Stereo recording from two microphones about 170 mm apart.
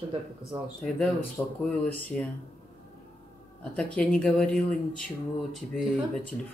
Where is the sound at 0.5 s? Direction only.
30° right (ahead or behind).